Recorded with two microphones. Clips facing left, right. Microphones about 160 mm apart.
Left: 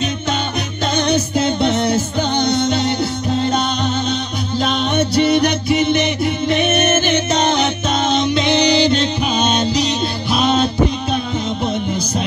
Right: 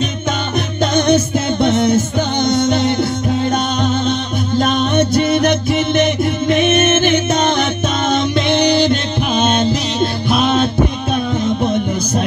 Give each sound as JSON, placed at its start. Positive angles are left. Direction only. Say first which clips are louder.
{"t": 0.9, "sound": "music", "louder": "right 3 dB", "side_deg": -50}